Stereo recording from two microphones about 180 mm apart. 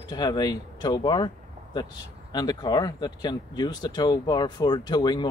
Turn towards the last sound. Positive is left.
turn(degrees=25)  # may be behind; listen again after turning